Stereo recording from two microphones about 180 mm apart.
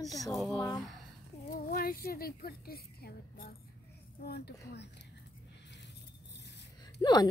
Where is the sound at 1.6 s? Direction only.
55° left (ahead or behind).